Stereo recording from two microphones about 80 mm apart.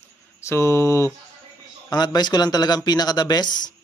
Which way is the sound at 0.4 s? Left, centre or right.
Left.